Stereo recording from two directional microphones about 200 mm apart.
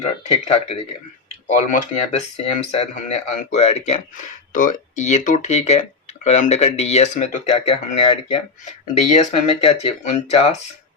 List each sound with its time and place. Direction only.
0.3 s speech: 30° left (ahead or behind)
1.9 s speech: 35° left (ahead or behind)